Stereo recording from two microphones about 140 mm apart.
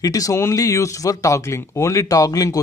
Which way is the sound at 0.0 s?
25° left (ahead or behind).